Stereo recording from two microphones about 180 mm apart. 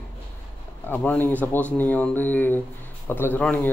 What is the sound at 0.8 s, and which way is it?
Speech, 10° left (ahead or behind).